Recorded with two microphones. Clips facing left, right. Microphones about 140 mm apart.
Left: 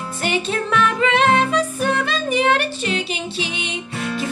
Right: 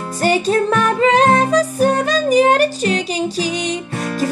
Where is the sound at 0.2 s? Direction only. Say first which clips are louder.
Right 7 dB; 40° right (ahead or behind).